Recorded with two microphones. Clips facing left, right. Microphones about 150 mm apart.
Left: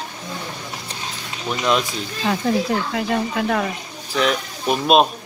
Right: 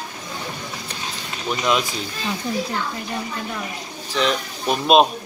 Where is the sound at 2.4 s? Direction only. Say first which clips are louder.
Left 4 dB; 90° left.